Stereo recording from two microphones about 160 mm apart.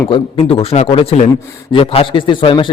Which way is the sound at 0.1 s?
35° left (ahead or behind).